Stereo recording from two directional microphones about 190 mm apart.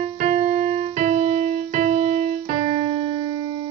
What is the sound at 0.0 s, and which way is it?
Keyboard, 35° right (ahead or behind).